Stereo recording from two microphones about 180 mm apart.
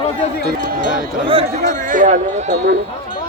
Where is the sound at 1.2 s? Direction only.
30° right (ahead or behind).